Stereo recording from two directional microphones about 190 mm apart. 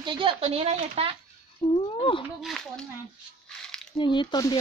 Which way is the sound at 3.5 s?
5° left (ahead or behind).